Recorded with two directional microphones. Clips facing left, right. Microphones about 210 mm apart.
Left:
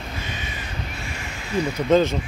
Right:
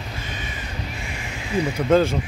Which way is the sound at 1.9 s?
10° right (ahead or behind).